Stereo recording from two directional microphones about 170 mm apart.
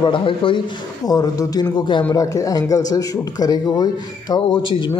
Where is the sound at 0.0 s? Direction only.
30° left (ahead or behind).